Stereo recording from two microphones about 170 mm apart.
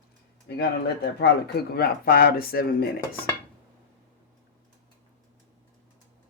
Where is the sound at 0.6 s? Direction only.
70° left (ahead or behind).